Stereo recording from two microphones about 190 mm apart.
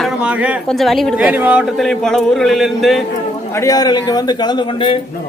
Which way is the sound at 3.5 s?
20° left (ahead or behind).